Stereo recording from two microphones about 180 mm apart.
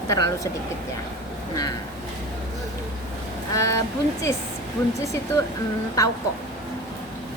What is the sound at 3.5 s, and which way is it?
Speech, 15° left (ahead or behind).